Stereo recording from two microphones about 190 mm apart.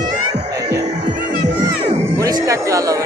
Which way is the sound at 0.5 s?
20° right (ahead or behind).